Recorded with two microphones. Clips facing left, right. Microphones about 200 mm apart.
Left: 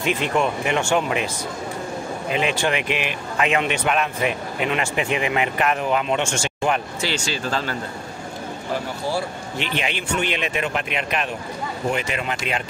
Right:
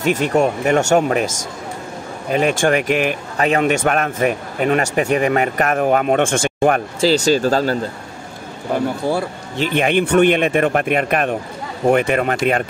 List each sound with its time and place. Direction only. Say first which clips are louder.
0.0 s speech: right 6 dB; 45° right (ahead or behind)
2.3 s speech: right 7 dB; 45° right (ahead or behind)
7.0 s speech: right 12 dB; 40° right (ahead or behind)
8.7 s speech: right 7 dB; 55° right (ahead or behind)